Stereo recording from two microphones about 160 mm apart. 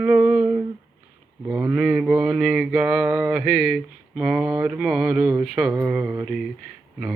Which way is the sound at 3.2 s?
5° right (ahead or behind).